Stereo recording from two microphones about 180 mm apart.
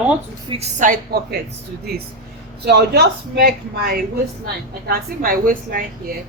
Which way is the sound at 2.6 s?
65° right (ahead or behind).